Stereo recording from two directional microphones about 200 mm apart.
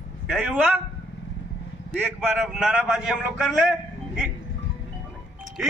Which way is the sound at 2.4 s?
Centre (ahead or behind).